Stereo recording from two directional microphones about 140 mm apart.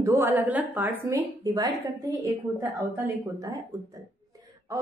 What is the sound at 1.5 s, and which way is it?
A woman's voice, 25° right (ahead or behind).